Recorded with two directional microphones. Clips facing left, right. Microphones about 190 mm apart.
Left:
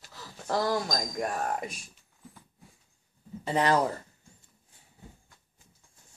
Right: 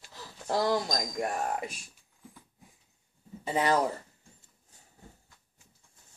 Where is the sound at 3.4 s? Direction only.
10° right (ahead or behind).